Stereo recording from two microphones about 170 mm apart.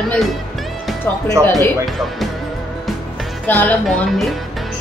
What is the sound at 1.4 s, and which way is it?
Speech, 15° right (ahead or behind).